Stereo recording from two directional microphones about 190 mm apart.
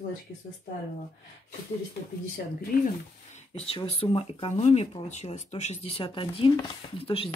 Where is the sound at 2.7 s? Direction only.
50° left (ahead or behind).